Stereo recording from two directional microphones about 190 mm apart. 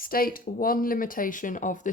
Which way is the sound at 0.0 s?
50° left (ahead or behind).